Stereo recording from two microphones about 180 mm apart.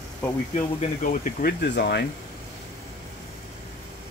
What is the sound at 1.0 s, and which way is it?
Speech, 50° left (ahead or behind).